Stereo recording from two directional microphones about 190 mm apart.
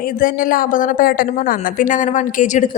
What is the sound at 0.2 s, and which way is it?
A woman's voice, 45° left (ahead or behind).